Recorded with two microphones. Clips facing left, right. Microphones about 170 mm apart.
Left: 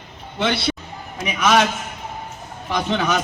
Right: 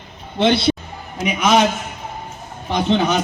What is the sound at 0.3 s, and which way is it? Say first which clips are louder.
A man's voice: right 6 dB; 25° right (ahead or behind).